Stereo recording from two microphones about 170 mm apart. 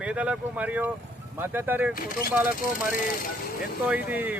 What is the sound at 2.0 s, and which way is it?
Speech, 60° left (ahead or behind).